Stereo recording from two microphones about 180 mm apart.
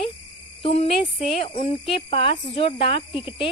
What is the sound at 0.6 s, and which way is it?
Speech, 30° left (ahead or behind).